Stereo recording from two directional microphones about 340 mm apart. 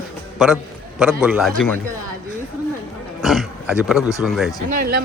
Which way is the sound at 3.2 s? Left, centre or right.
Centre.